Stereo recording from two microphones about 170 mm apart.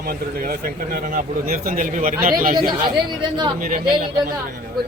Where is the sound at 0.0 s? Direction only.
60° right (ahead or behind).